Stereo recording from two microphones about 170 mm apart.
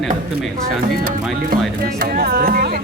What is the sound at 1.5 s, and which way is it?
Music, 60° right (ahead or behind).